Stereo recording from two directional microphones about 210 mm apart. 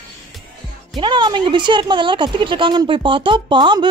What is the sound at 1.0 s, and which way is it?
Speech, 20° right (ahead or behind).